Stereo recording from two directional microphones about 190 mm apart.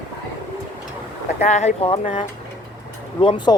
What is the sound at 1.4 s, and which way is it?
Speech, 35° left (ahead or behind).